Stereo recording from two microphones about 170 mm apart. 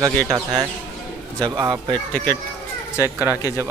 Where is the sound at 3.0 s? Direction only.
15° right (ahead or behind).